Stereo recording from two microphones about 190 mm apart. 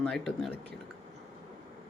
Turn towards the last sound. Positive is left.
turn(degrees=0)  # may be behind; listen again after turning